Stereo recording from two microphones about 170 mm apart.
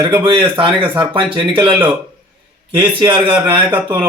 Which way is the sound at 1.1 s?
30° right (ahead or behind).